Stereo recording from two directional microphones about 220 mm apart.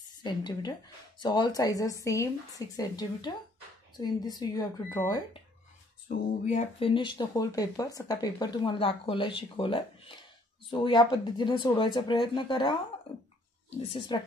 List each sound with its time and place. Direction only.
0.2 s a woman's voice: 20° left (ahead or behind)
6.5 s speech: 25° left (ahead or behind)
13.8 s speech: 20° left (ahead or behind)